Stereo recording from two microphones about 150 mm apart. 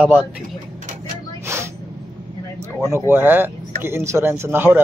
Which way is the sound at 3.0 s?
15° right (ahead or behind).